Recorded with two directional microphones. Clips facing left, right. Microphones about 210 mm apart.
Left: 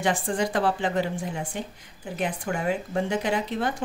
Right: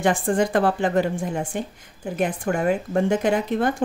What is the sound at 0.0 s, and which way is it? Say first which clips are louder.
Speech: right 5 dB; 50° right (ahead or behind).